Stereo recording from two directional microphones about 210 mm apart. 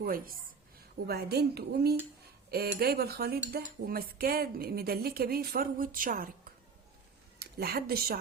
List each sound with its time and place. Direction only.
0.0 s cutlery: 45° right (ahead or behind)
7.3 s speech: 45° right (ahead or behind)